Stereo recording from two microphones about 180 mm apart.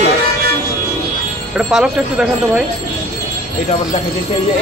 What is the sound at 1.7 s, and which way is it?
Speech, 5° right (ahead or behind).